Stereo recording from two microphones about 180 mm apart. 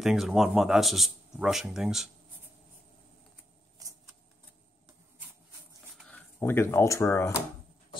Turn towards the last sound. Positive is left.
turn(degrees=15)  # may be behind; listen again after turning